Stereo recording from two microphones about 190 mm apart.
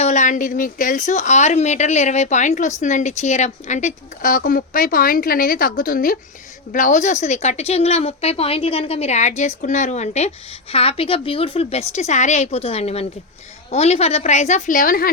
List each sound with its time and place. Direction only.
0.0 s a woman's voice: 40° left (ahead or behind)